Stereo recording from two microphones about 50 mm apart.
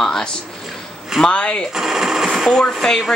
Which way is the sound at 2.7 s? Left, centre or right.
Centre.